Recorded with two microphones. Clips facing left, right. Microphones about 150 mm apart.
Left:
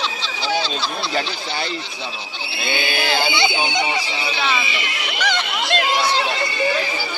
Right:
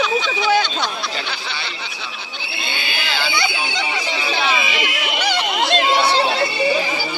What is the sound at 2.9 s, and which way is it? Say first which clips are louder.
Speech: left 4 dB; 40° left (ahead or behind).